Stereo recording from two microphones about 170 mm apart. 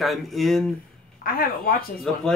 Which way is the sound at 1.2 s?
60° left (ahead or behind).